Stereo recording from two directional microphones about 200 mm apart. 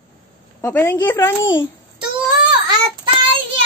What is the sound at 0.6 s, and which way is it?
Speech, 10° left (ahead or behind).